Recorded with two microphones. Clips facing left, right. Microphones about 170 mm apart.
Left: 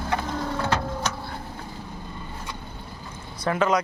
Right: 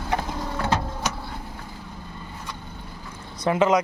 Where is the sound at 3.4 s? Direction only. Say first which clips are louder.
Right 3 dB; 20° right (ahead or behind).